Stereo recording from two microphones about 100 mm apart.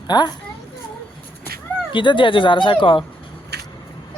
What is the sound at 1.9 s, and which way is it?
Speech, 55° left (ahead or behind).